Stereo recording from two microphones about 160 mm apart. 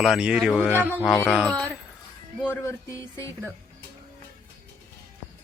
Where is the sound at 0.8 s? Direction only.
10° right (ahead or behind).